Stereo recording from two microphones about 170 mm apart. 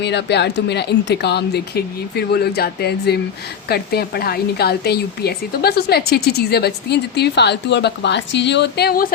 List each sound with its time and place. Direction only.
0.0 s a woman's voice: 85° left; by 9.1 s 60° left (ahead or behind)